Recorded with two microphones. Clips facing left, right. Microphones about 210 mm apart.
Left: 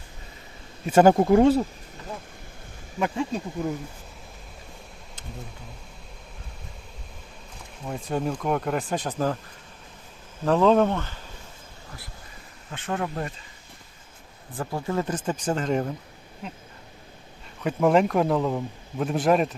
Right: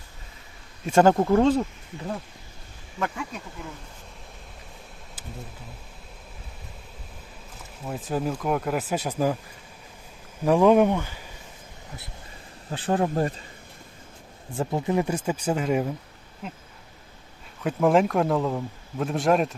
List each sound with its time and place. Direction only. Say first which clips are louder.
0.9 s speech: left 2 dB; 5° left (ahead or behind)
3.0 s speech: left 5 dB; 25° left (ahead or behind)
7.9 s speech: even; centre (ahead or behind)
10.4 s speech: right 2 dB; 10° right (ahead or behind)
12.7 s speech: right 5 dB; 35° right (ahead or behind)
14.5 s speech: right 3 dB; 25° right (ahead or behind); by 16.0 s 5° right (ahead or behind)
17.6 s speech: even; centre (ahead or behind)